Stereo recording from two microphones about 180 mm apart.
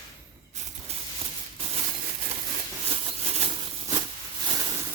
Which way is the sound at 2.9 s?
35° right (ahead or behind).